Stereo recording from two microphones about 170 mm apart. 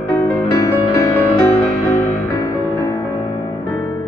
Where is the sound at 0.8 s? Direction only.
20° left (ahead or behind).